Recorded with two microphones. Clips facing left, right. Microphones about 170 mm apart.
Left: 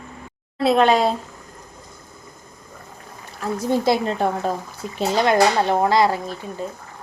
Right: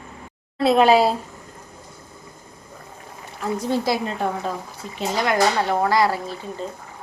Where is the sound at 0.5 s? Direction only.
Centre (ahead or behind).